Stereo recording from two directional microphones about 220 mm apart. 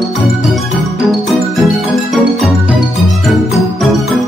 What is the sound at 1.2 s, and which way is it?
Music, centre (ahead or behind).